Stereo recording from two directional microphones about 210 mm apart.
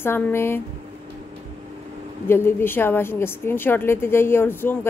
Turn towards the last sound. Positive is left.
turn(degrees=10)  # may be behind; listen again after turning